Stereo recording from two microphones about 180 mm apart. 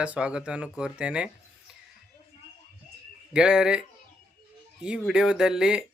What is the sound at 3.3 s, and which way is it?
Speech, 5° right (ahead or behind).